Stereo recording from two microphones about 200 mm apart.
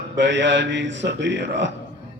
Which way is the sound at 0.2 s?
60° right (ahead or behind).